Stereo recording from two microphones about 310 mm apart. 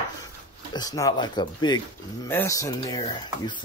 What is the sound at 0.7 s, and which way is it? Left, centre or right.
Speech, centre.